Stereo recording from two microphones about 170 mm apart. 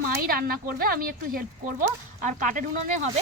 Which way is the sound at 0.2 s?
60° right (ahead or behind).